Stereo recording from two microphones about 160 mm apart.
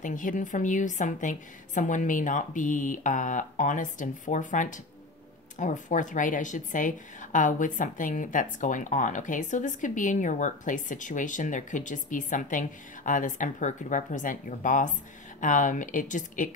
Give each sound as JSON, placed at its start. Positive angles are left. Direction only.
{"t": 0.0, "sound": "speech", "side_deg": 55}